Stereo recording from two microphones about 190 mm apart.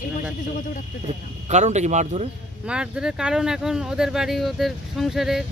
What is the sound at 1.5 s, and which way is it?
Speech, 40° right (ahead or behind).